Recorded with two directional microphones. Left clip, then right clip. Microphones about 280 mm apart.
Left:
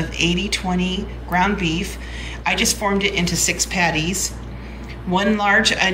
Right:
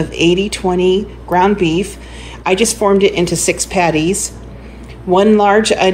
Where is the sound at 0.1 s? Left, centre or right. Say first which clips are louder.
Right 7 dB; right.